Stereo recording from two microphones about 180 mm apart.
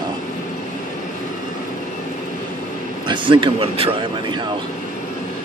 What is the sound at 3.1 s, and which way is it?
Speech, 25° right (ahead or behind).